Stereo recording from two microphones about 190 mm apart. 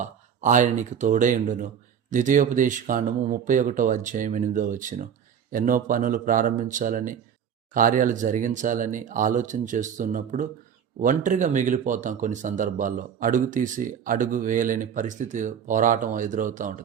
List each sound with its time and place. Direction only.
0.0 s speech: 40° right (ahead or behind)